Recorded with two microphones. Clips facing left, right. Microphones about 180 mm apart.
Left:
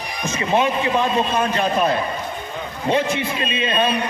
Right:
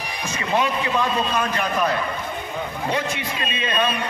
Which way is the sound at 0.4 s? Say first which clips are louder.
Left 3 dB; 25° left (ahead or behind).